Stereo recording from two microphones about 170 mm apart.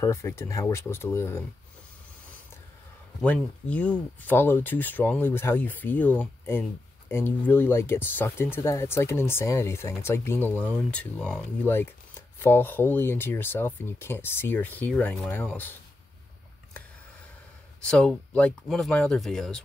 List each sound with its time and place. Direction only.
0.0 s speech: 15° left (ahead or behind)
3.2 s speech: 10° left (ahead or behind)
17.7 s speech: 5° left (ahead or behind)